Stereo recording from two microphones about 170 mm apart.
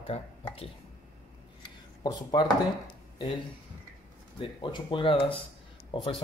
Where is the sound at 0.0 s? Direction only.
35° left (ahead or behind).